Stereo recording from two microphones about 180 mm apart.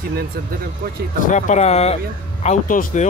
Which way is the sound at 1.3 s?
40° left (ahead or behind).